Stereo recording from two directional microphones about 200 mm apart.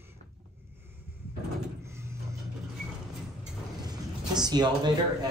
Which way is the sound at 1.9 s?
15° right (ahead or behind).